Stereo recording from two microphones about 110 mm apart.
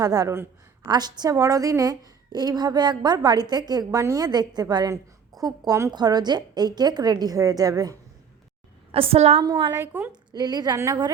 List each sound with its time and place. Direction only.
0.0 s a woman's voice: 35° right (ahead or behind)
8.9 s a woman's voice: 60° right (ahead or behind)
9.7 s speech: 15° right (ahead or behind)
10.3 s a woman's voice: 40° right (ahead or behind)